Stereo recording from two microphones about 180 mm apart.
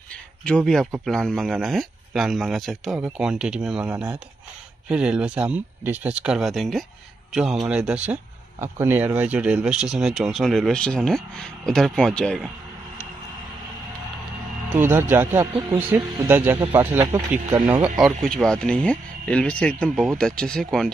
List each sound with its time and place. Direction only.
0.5 s speech: 5° left (ahead or behind)
14.7 s speech: 10° right (ahead or behind)
17.8 s speech: 5° right (ahead or behind)